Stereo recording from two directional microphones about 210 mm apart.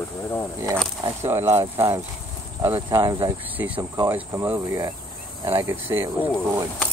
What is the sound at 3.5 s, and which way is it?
Speech, 10° right (ahead or behind).